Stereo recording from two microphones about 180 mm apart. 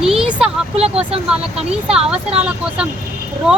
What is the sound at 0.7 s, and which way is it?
Speech, 35° right (ahead or behind).